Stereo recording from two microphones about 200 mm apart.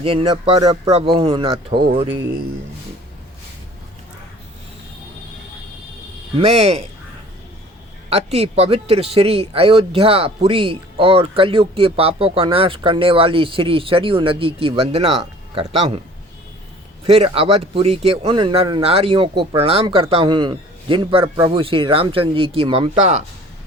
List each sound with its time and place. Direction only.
0.0 s speech: 25° right (ahead or behind)
6.3 s speech: 30° right (ahead or behind)
8.1 s speech: 30° right (ahead or behind)
17.1 s speech: 30° right (ahead or behind)